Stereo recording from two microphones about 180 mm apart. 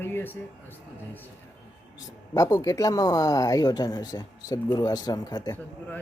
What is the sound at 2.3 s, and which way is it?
Speech, 20° left (ahead or behind).